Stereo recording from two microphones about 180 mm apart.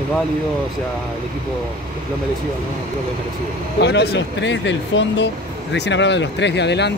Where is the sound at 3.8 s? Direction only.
70° left (ahead or behind).